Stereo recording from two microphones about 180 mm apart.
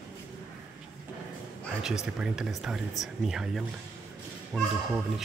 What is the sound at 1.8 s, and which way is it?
Speech, 5° right (ahead or behind).